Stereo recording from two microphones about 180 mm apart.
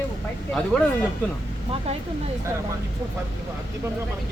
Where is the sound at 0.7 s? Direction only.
5° left (ahead or behind).